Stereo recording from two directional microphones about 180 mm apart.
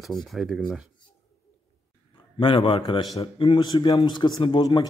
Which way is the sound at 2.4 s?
30° left (ahead or behind).